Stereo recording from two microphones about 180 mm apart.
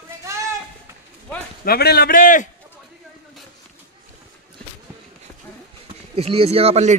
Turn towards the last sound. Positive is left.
turn(degrees=-35)  # may be behind; listen again after turning